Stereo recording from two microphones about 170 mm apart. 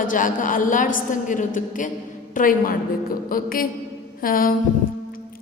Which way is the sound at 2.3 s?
55° left (ahead or behind).